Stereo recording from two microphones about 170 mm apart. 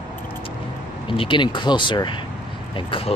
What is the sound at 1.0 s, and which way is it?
Speech, 30° left (ahead or behind).